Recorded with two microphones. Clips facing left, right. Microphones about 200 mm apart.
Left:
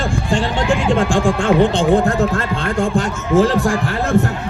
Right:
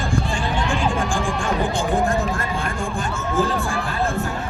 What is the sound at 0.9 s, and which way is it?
Speech, 75° left (ahead or behind).